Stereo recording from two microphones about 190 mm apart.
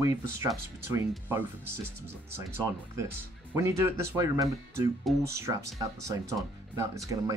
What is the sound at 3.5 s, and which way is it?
Speech, 15° right (ahead or behind).